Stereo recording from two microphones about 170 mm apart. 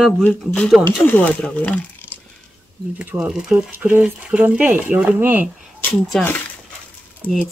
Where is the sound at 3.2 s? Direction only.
5° right (ahead or behind).